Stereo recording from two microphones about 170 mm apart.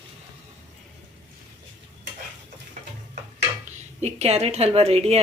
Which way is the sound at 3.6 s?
40° right (ahead or behind).